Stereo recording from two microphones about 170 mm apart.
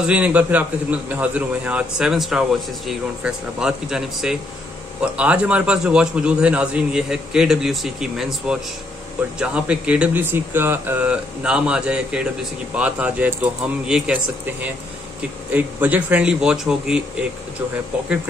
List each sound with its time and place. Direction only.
0.0 s a man's voice: 5° right (ahead or behind)